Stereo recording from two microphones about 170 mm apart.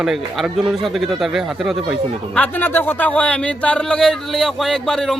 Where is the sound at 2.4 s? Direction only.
10° left (ahead or behind).